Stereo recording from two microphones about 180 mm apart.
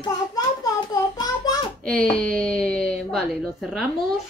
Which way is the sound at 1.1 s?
20° left (ahead or behind).